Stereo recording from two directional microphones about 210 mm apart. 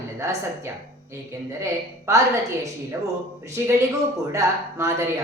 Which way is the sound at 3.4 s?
15° right (ahead or behind).